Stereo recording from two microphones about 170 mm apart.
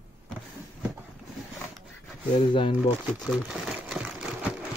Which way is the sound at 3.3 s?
5° right (ahead or behind).